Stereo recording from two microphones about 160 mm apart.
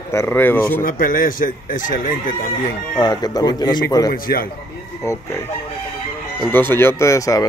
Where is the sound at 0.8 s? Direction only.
60° left (ahead or behind).